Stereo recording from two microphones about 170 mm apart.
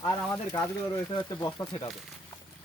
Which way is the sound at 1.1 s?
30° left (ahead or behind).